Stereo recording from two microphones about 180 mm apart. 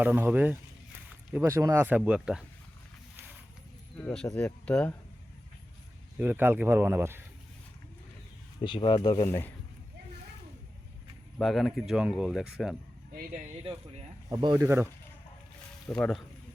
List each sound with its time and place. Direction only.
0.0 s speech: 10° right (ahead or behind)
4.0 s speech: 5° left (ahead or behind)
6.1 s speech: 10° right (ahead or behind)
8.6 s speech: 25° left (ahead or behind)
11.3 s speech: centre (ahead or behind)
14.3 s speech: 20° right (ahead or behind)
15.9 s speech: 5° left (ahead or behind)